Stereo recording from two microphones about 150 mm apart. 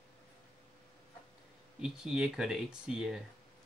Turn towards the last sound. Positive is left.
turn(degrees=-5)  # may be behind; listen again after turning